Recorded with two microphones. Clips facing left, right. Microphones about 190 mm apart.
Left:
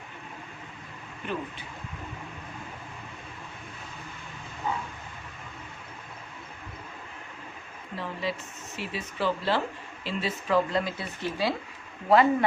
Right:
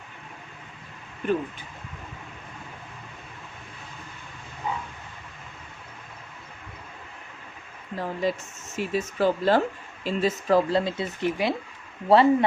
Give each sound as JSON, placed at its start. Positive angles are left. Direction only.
{"t": 1.2, "sound": "speech", "side_deg": -50}
{"t": 7.9, "sound": "speech", "side_deg": -45}
{"t": 12.0, "sound": "speech", "side_deg": -30}